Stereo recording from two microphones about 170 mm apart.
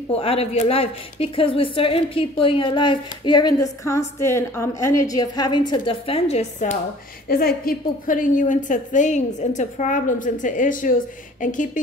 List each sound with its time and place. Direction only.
0.1 s a woman's voice: 35° left (ahead or behind)
7.2 s a woman's voice: 60° left (ahead or behind)